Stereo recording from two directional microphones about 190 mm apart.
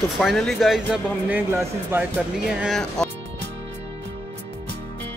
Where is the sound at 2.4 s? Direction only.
Centre (ahead or behind).